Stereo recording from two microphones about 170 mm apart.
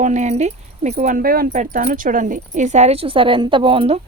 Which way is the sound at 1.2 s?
60° right (ahead or behind).